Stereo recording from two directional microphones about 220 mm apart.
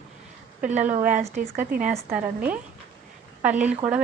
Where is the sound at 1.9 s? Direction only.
5° right (ahead or behind).